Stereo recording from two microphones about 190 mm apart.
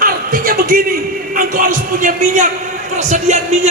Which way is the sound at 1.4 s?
45° right (ahead or behind).